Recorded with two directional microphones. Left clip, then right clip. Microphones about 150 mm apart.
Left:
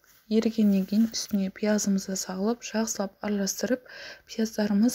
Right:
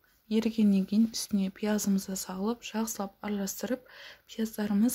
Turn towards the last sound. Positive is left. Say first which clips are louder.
# left 4 dB
turn(degrees=15)  # may be behind; listen again after turning